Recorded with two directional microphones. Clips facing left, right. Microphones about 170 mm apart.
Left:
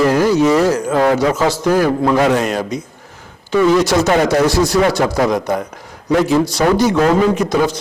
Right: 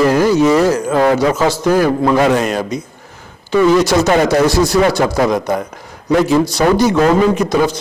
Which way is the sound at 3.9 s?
20° right (ahead or behind).